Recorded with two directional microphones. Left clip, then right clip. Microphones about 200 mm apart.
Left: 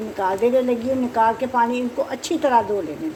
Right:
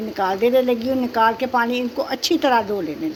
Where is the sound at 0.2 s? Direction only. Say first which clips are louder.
Right 1 dB; 20° right (ahead or behind).